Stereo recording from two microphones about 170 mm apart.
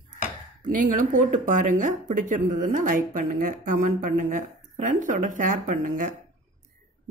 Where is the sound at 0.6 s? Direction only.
50° right (ahead or behind).